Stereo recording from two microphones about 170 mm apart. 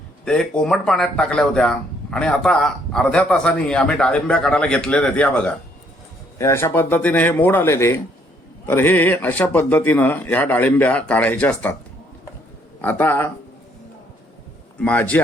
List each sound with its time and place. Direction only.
0.3 s speech: 5° left (ahead or behind)
12.8 s speech: 10° left (ahead or behind)
14.8 s speech: 10° left (ahead or behind)